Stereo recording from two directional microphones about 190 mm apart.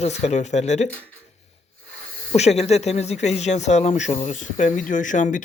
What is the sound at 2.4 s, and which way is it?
Speech, 35° left (ahead or behind).